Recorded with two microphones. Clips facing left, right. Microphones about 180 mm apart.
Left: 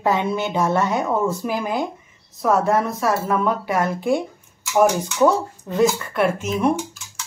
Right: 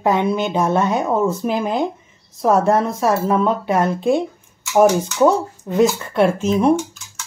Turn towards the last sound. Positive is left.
turn(degrees=-30)  # may be behind; listen again after turning